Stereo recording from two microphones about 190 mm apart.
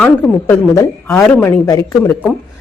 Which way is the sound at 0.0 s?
10° left (ahead or behind).